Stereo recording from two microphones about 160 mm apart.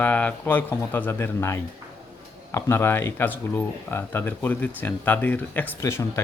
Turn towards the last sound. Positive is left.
turn(degrees=15)  # may be behind; listen again after turning